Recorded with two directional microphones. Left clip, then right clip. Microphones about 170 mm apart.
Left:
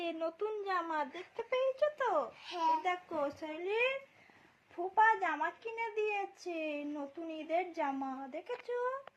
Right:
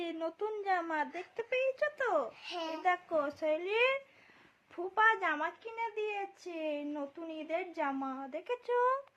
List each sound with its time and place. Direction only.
0.0 s a woman's voice: 35° right (ahead or behind)
2.8 s a child's voice: 20° right (ahead or behind); by 3.9 s 35° right (ahead or behind)
4.9 s a child's voice: 35° right (ahead or behind)
5.6 s a woman's voice: centre (ahead or behind)
8.4 s speech: 25° right (ahead or behind)